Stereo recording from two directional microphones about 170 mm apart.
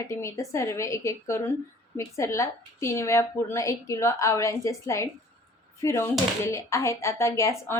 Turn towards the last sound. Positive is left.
turn(degrees=15)  # may be behind; listen again after turning